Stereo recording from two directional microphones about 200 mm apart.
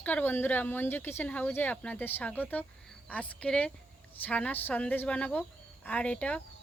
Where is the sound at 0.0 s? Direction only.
10° left (ahead or behind).